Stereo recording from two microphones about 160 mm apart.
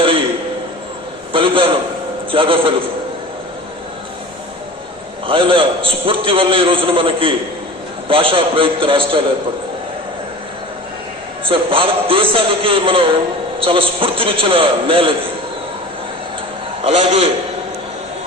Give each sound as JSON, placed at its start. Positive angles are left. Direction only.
{"t": 1.3, "sound": "a sound", "side_deg": -30}
{"t": 2.3, "sound": "a man's voice", "side_deg": -35}
{"t": 5.2, "sound": "a man's voice", "side_deg": -35}
{"t": 11.4, "sound": "a man's voice", "side_deg": -35}
{"t": 16.8, "sound": "a man's voice", "side_deg": -40}